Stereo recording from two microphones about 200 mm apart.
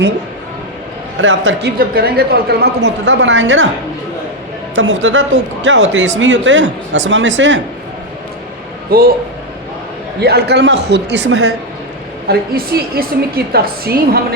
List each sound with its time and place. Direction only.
1.2 s speech: 70° right (ahead or behind)
4.7 s speech: 70° right (ahead or behind)
8.9 s a woman's voice: 45° right (ahead or behind)
10.2 s speech: 55° right (ahead or behind); by 11.5 s 80° right
12.3 s a woman's voice: 50° right (ahead or behind)